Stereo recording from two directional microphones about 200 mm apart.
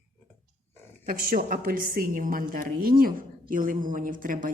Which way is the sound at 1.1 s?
45° right (ahead or behind).